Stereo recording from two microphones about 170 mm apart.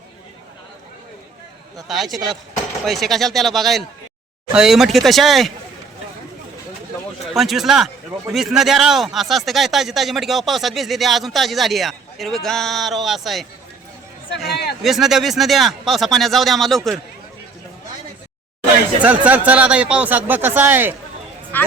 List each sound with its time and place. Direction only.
1.9 s speech: centre (ahead or behind)
7.3 s speech: centre (ahead or behind)
14.3 s speech: 70° left (ahead or behind)
14.8 s speech: centre (ahead or behind)
19.0 s speech: 10° right (ahead or behind)